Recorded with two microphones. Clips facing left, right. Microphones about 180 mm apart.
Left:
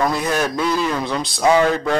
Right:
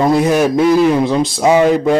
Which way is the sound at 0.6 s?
60° right (ahead or behind).